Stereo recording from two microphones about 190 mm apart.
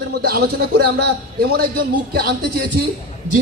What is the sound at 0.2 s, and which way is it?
Speech, 55° right (ahead or behind).